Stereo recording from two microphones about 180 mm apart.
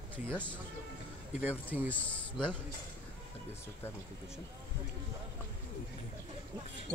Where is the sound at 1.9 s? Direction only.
10° left (ahead or behind).